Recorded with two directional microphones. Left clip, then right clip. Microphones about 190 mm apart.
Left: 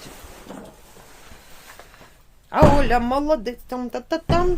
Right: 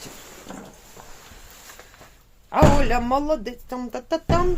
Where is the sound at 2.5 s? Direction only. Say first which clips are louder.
Left 2 dB; 10° left (ahead or behind).